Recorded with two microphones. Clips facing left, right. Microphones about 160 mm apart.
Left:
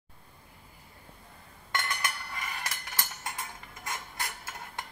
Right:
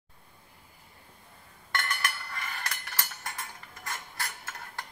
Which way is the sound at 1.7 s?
20° left (ahead or behind).